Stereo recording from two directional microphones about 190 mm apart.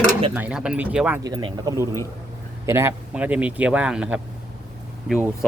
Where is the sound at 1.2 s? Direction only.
25° right (ahead or behind).